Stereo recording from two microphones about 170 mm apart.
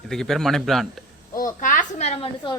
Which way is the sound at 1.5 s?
45° left (ahead or behind).